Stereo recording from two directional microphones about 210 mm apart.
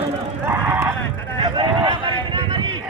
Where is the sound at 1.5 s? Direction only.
20° right (ahead or behind).